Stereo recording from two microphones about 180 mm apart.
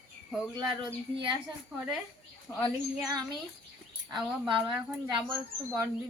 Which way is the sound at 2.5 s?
15° left (ahead or behind).